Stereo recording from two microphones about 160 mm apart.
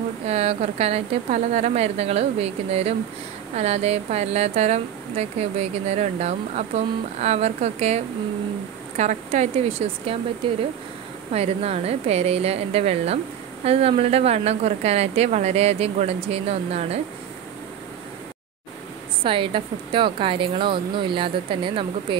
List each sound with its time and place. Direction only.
0.3 s a woman's voice: 40° right (ahead or behind)
19.2 s a woman's voice: 35° right (ahead or behind)